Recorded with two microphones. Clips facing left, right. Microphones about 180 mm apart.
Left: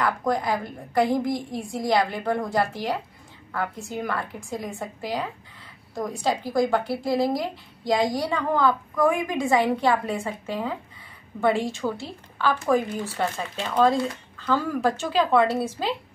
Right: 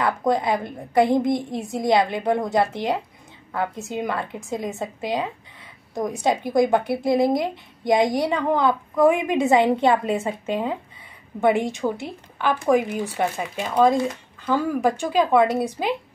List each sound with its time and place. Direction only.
0.0 s a woman's voice: 20° right (ahead or behind)